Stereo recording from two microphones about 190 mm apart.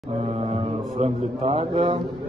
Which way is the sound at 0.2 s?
30° right (ahead or behind).